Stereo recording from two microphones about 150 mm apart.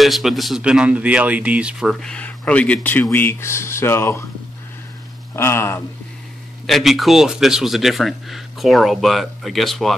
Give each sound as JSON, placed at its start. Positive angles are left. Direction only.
{"t": 0.0, "sound": "speech", "side_deg": 0}
{"t": 5.3, "sound": "speech", "side_deg": 15}
{"t": 6.6, "sound": "speech", "side_deg": 0}